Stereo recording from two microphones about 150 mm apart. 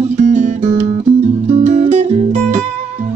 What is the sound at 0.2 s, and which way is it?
Music, 55° right (ahead or behind).